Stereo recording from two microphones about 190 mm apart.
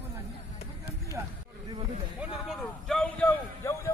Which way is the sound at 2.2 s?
Centre (ahead or behind).